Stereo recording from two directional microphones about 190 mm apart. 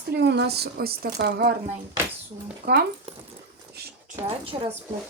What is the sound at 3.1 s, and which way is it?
A woman's voice, 30° right (ahead or behind).